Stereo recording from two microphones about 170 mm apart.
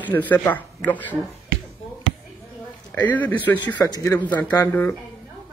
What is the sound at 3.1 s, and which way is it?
Speech, 10° left (ahead or behind).